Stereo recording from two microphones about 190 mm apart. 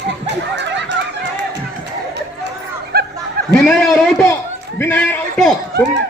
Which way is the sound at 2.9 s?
55° right (ahead or behind).